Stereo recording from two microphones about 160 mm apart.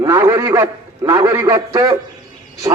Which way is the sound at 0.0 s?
15° right (ahead or behind).